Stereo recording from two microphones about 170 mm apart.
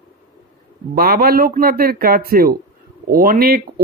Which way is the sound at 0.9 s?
60° right (ahead or behind).